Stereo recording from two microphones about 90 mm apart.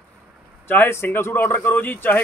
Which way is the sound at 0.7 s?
25° left (ahead or behind).